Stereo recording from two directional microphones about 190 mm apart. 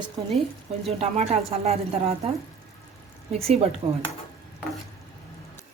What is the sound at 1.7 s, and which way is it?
Speech, 35° right (ahead or behind).